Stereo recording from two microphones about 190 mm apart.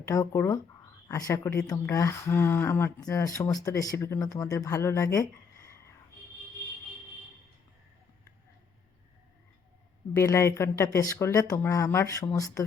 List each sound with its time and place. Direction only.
0.1 s speech: 15° left (ahead or behind)
10.2 s speech: 15° left (ahead or behind)